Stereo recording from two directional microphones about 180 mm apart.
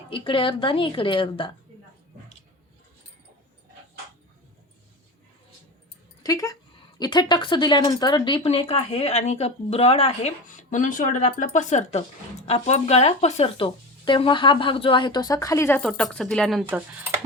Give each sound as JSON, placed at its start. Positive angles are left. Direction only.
{"t": 0.1, "sound": "speech", "side_deg": 30}
{"t": 6.2, "sound": "speech", "side_deg": 20}
{"t": 16.6, "sound": "speech", "side_deg": -10}